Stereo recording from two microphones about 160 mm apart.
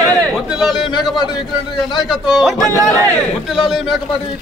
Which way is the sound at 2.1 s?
Centre (ahead or behind).